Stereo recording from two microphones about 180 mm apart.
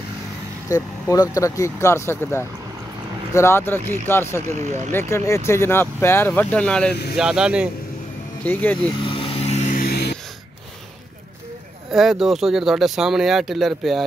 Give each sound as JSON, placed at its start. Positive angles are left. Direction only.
{"t": 0.7, "sound": "speech", "side_deg": 20}
{"t": 4.6, "sound": "speech", "side_deg": -40}
{"t": 4.9, "sound": "speech", "side_deg": 15}
{"t": 8.5, "sound": "speech", "side_deg": 10}
{"t": 9.0, "sound": "a sound", "side_deg": 30}
{"t": 11.9, "sound": "speech", "side_deg": 0}